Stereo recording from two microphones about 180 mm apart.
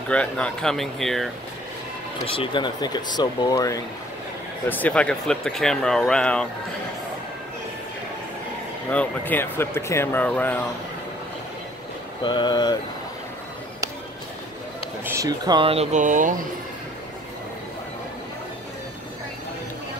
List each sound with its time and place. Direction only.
0.1 s speech: 5° left (ahead or behind)
2.2 s speech: 30° left (ahead or behind); by 6.4 s 5° left (ahead or behind)
8.9 s speech: 10° left (ahead or behind)
12.2 s speech: 25° left (ahead or behind)
15.0 s speech: 20° right (ahead or behind); by 16.4 s 45° right (ahead or behind)